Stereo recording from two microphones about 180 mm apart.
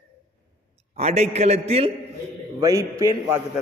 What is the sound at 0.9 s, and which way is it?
Speech, 35° right (ahead or behind).